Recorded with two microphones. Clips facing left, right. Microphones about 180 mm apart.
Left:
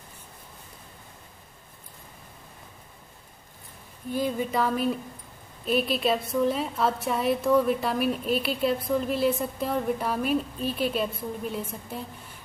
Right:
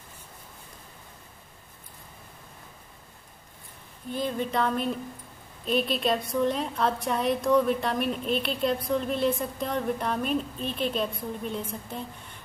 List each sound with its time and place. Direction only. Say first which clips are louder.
4.1 s a woman's voice: left 2 dB; 10° left (ahead or behind)